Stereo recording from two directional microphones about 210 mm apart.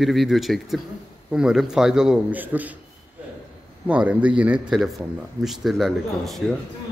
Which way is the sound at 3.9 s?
5° right (ahead or behind).